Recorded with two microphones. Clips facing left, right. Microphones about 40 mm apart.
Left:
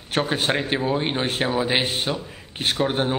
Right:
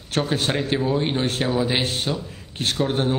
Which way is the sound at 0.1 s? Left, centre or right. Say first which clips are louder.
Left 1 dB; centre.